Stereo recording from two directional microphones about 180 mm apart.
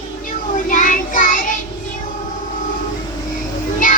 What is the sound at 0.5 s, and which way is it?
Child singing, 45° left (ahead or behind).